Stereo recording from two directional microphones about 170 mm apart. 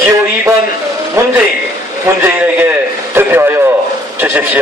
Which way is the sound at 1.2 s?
15° right (ahead or behind).